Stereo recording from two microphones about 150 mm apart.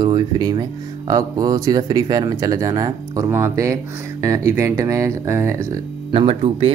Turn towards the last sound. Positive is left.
turn(degrees=-40)  # may be behind; listen again after turning